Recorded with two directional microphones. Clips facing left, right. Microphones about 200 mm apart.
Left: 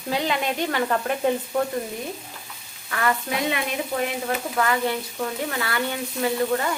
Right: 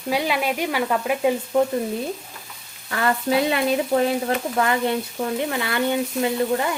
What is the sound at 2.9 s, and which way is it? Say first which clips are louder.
Frying: right 4 dB; 30° right (ahead or behind).